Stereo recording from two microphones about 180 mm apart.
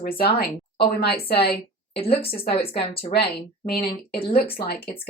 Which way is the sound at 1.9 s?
30° left (ahead or behind).